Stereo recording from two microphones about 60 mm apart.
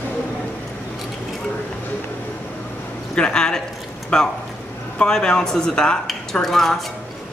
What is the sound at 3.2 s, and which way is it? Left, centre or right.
Speech, centre.